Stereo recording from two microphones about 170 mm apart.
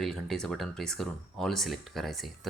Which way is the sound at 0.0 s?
5° left (ahead or behind).